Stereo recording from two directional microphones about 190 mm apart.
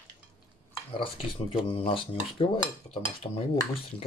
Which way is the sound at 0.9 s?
30° left (ahead or behind).